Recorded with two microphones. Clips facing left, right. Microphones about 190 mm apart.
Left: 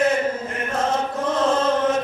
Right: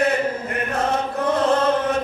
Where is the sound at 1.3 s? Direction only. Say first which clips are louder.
Right 1 dB; 60° right (ahead or behind).